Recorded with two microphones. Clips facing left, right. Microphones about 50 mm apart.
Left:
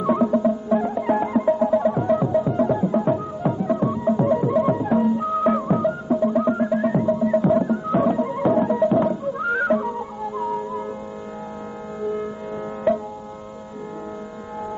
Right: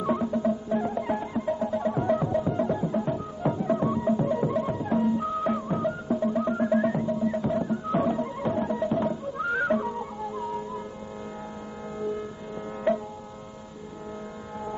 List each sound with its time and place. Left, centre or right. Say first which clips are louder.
0.4 s music: left 6 dB; centre
1.1 s music: left 9 dB; left
1.9 s music: left 5 dB; centre
3.4 s music: left 3 dB; centre
4.1 s music: left 9 dB; left
5.8 s music: left 6 dB; centre; by 7.7 s left
7.9 s music: left 6 dB; centre